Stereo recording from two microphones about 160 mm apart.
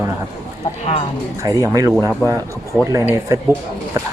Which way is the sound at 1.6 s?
20° right (ahead or behind).